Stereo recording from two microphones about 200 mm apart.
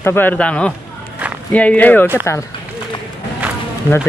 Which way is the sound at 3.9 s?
10° right (ahead or behind).